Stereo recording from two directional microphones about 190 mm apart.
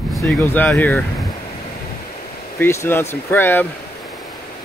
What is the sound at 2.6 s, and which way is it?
Speech, 15° left (ahead or behind).